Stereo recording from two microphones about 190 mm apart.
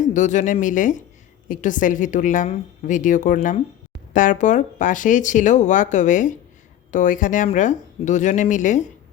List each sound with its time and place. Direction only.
0.0 s a woman's voice: 40° left (ahead or behind)